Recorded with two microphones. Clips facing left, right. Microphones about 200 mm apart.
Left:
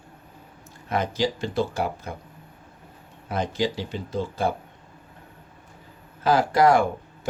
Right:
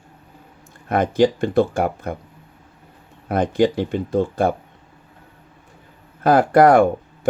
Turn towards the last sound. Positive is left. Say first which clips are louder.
# right 6 dB
turn(degrees=-55)  # may be behind; listen again after turning